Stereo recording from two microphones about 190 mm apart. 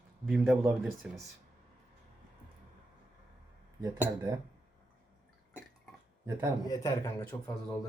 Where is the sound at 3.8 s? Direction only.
15° right (ahead or behind).